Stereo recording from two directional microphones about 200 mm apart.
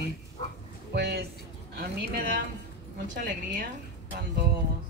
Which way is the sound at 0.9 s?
55° right (ahead or behind).